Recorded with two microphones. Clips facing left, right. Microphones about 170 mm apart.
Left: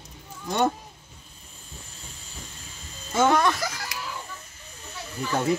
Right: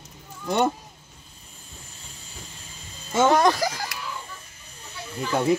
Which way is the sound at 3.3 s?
35° right (ahead or behind).